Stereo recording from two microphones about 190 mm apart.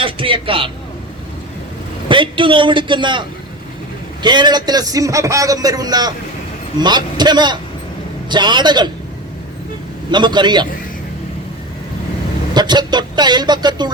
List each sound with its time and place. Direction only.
0.0 s a man's voice: 25° right (ahead or behind)
2.0 s a man's voice: 25° right (ahead or behind)
10.1 s a man's voice: 25° right (ahead or behind)
12.5 s a man's voice: 25° right (ahead or behind)